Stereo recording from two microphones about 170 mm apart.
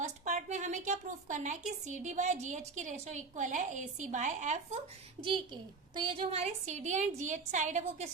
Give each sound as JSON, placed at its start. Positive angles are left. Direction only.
{"t": 0.0, "sound": "a woman's voice", "side_deg": -45}
{"t": 5.2, "sound": "a woman's voice", "side_deg": -30}